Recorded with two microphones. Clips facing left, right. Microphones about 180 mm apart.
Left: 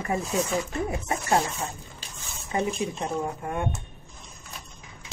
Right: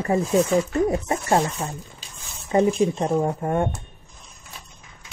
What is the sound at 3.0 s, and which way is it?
Speech, 40° right (ahead or behind).